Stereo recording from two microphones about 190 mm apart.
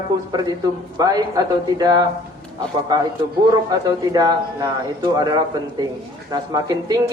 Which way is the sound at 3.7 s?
20° right (ahead or behind).